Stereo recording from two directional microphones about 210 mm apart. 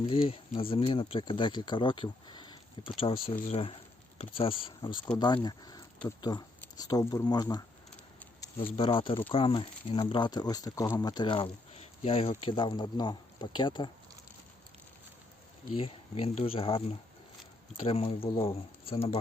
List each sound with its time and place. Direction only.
0.1 s speech: 25° left (ahead or behind)
3.3 s speech: 40° left (ahead or behind)
4.2 s speech: 25° left (ahead or behind)
8.4 s a sound: 15° left (ahead or behind)
8.7 s speech: 25° left (ahead or behind)
15.7 s speech: 25° left (ahead or behind)